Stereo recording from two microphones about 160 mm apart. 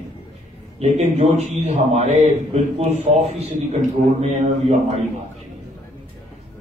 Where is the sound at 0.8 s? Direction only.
40° right (ahead or behind).